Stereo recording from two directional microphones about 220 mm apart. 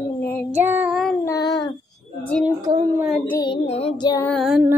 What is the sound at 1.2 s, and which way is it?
Child singing, 15° left (ahead or behind).